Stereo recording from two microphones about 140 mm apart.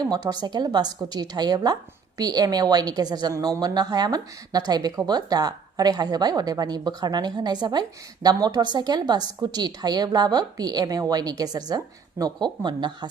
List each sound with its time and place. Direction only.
0.0 s a woman's voice: 30° right (ahead or behind)